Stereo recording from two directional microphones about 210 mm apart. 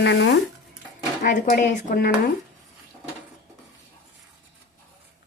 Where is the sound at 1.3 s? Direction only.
35° left (ahead or behind).